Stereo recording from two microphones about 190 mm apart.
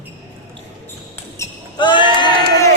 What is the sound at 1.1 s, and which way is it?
Basketball bounce, 20° left (ahead or behind).